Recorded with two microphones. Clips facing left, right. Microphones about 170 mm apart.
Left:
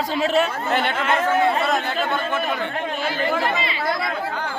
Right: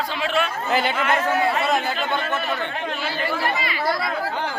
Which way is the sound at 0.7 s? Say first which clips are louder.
Right 2 dB; centre (ahead or behind).